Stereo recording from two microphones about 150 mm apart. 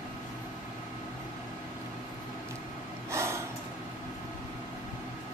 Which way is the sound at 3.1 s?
20° right (ahead or behind).